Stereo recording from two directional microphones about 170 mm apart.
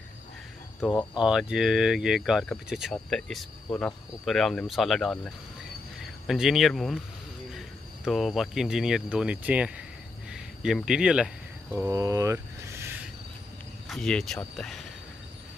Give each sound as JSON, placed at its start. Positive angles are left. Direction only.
{"t": 0.8, "sound": "speech", "side_deg": -5}
{"t": 10.3, "sound": "cricket", "side_deg": -5}
{"t": 11.9, "sound": "a sound", "side_deg": -20}
{"t": 13.8, "sound": "speech", "side_deg": 5}